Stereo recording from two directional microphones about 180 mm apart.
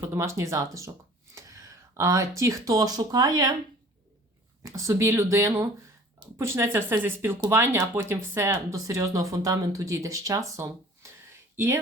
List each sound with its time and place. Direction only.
0.0 s speech: 15° right (ahead or behind)
4.6 s speech: 15° right (ahead or behind)